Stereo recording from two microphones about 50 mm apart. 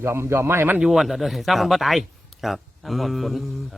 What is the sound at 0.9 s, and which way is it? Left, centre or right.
Speech, centre.